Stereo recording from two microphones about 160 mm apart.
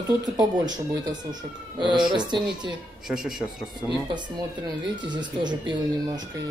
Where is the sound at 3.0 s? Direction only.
5° right (ahead or behind).